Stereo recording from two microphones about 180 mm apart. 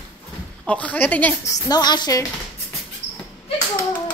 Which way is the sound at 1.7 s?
25° left (ahead or behind).